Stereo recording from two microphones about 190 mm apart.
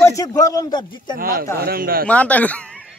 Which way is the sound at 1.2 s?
50° right (ahead or behind).